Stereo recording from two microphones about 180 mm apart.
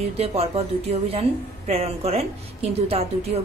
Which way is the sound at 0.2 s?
35° right (ahead or behind).